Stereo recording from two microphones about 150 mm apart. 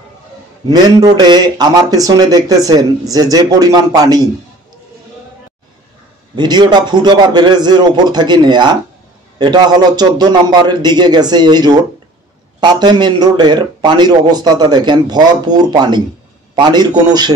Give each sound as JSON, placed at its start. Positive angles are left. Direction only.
{"t": 0.7, "sound": "speech", "side_deg": -25}
{"t": 6.3, "sound": "speech", "side_deg": -30}